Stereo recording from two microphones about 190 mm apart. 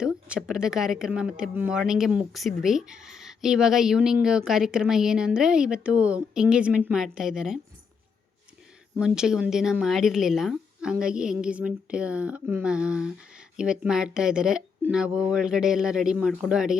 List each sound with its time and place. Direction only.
0.0 s a woman's voice: 5° right (ahead or behind)
9.0 s a woman's voice: 5° right (ahead or behind)